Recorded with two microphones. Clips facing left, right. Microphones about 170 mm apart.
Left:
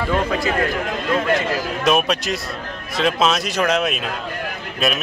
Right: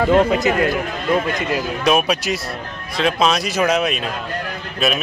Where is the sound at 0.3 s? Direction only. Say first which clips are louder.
Right 3 dB; 20° right (ahead or behind).